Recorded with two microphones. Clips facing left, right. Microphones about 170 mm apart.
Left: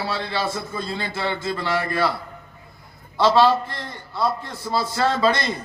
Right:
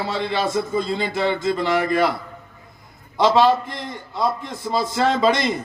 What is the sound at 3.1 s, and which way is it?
A man's voice, 20° right (ahead or behind).